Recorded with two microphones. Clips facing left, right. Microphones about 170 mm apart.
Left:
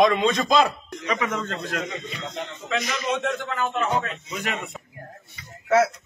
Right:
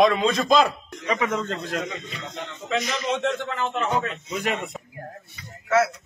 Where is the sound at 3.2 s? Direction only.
20° right (ahead or behind).